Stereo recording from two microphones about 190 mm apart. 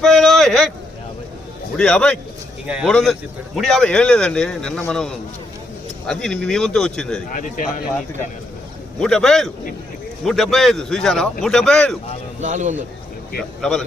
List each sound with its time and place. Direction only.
0.0 s a sound: centre (ahead or behind)
1.7 s speech: 5° left (ahead or behind)
7.3 s speech: 45° left (ahead or behind)
9.0 s speech: 5° left (ahead or behind)
12.4 s a man's voice: 40° right (ahead or behind)
13.4 s speech: 5° left (ahead or behind)